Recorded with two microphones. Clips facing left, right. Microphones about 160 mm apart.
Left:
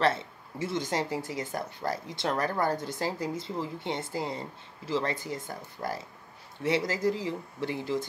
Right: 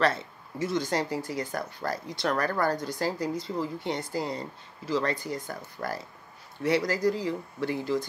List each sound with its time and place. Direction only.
0.0 s speech: 25° left (ahead or behind)